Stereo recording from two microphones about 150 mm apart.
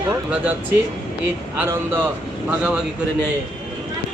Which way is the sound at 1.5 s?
15° right (ahead or behind).